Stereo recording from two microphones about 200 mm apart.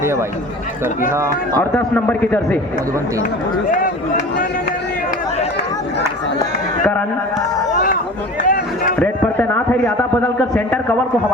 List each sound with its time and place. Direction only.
0.0 s speech: 15° right (ahead or behind)
1.7 s speech: 10° left (ahead or behind)
7.7 s a sound: 40° left (ahead or behind)
8.4 s run: 40° left (ahead or behind)
9.0 s speech: 10° left (ahead or behind)